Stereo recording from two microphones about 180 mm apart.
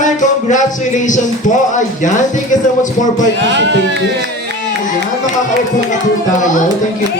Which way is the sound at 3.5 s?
80° right.